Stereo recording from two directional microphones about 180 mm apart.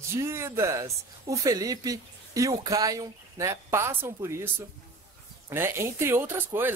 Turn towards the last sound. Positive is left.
turn(degrees=-10)  # may be behind; listen again after turning